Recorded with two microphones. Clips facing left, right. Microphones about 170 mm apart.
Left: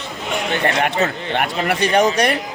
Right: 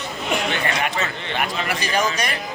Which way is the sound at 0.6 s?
55° left (ahead or behind).